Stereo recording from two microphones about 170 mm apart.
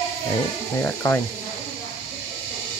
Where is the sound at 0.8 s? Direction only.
15° left (ahead or behind).